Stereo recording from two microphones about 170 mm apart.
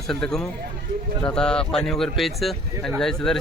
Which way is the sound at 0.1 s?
5° left (ahead or behind).